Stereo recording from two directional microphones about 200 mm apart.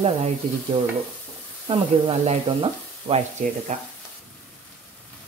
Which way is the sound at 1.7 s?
30° right (ahead or behind).